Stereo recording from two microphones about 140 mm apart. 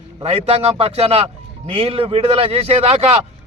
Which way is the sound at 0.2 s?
45° right (ahead or behind).